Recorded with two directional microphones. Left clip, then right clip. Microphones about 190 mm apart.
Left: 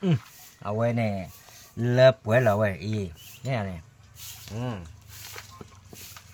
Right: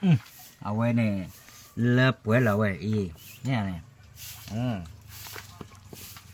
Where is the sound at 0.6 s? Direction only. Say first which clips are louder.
Left 2 dB; 40° left (ahead or behind).